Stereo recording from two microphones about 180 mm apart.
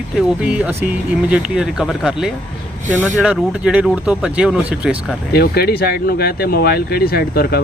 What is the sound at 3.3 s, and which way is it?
Speech, 5° right (ahead or behind).